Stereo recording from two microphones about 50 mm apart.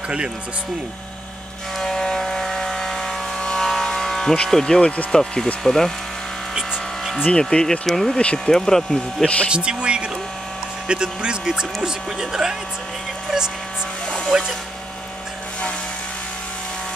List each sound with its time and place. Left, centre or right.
1.8 s vehicle: centre
3.3 s a sound: centre
5.1 s speech: centre
7.3 s speech: centre
9.2 s speech: left
9.5 s speech: right
14.3 s speech: centre